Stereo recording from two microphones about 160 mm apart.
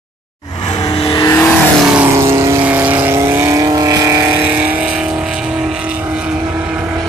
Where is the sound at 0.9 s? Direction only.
30° left (ahead or behind).